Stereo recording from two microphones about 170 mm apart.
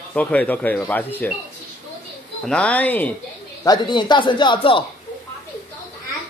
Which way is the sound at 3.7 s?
25° left (ahead or behind).